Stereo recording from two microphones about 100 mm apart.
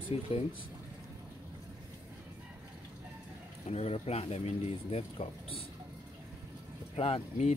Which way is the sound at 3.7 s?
90° left.